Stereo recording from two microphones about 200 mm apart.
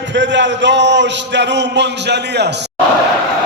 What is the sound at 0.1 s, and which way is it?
A man's voice, 65° right (ahead or behind).